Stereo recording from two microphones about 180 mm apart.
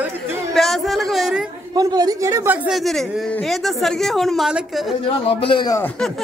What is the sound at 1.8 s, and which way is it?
A man's voice, 20° right (ahead or behind).